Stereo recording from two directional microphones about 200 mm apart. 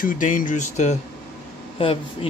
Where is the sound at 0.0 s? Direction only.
45° left (ahead or behind).